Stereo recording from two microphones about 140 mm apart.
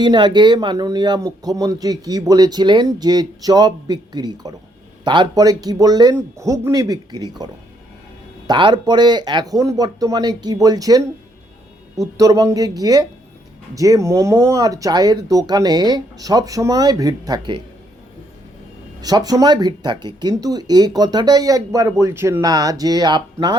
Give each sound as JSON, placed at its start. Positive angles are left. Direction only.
{"t": 0.0, "sound": "speech", "side_deg": -30}
{"t": 19.0, "sound": "speech", "side_deg": -25}